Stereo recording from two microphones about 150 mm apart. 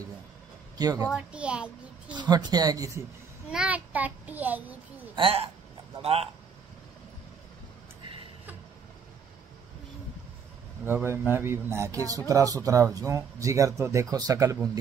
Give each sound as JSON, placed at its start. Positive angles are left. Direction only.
{"t": 0.7, "sound": "a woman's voice", "side_deg": -25}
{"t": 1.1, "sound": "a child's voice", "side_deg": -5}
{"t": 2.1, "sound": "speech", "side_deg": -30}
{"t": 3.4, "sound": "a child's voice", "side_deg": -10}
{"t": 5.1, "sound": "a woman's voice", "side_deg": -40}
{"t": 10.9, "sound": "speech", "side_deg": -15}